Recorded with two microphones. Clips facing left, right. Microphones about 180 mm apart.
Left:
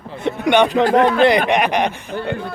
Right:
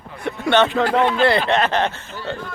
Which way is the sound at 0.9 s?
45° left (ahead or behind).